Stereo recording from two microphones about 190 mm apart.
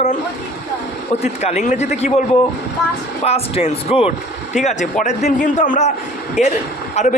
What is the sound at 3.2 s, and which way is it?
Speech, 35° left (ahead or behind).